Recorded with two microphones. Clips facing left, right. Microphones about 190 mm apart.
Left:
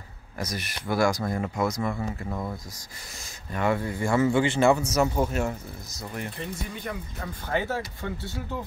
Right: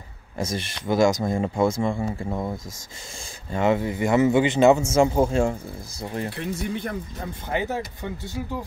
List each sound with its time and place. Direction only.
0.4 s speech: 25° right (ahead or behind)
6.3 s speech: 75° right (ahead or behind)
7.4 s speech: 20° right (ahead or behind)